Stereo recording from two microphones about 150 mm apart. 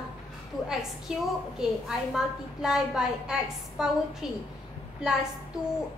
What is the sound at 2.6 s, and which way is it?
A woman's voice, 5° right (ahead or behind).